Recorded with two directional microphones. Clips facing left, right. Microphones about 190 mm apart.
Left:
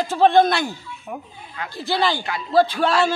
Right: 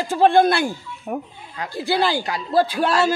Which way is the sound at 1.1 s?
45° right (ahead or behind).